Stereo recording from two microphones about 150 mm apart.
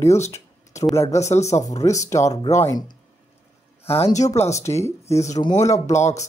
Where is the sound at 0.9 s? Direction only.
20° left (ahead or behind).